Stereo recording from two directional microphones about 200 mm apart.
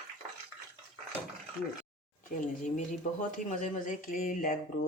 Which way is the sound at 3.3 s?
40° left (ahead or behind).